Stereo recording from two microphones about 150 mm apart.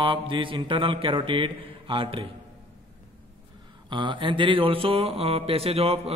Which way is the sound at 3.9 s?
30° right (ahead or behind).